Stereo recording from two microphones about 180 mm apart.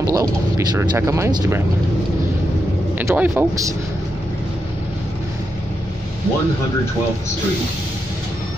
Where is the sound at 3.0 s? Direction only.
10° right (ahead or behind).